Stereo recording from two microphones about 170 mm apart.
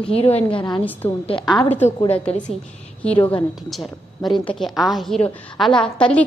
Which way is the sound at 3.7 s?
Centre (ahead or behind).